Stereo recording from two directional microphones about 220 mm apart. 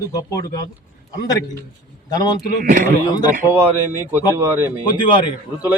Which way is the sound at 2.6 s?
35° right (ahead or behind).